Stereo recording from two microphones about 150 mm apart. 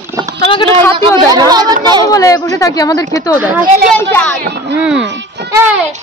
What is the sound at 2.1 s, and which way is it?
Speech, 20° left (ahead or behind).